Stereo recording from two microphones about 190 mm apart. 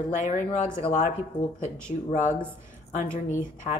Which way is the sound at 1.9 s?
40° left (ahead or behind).